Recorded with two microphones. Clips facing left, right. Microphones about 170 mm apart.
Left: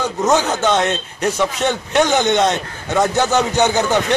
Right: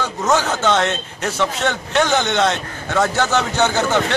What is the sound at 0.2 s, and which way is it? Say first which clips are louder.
A man's voice: left 2 dB; 20° left (ahead or behind).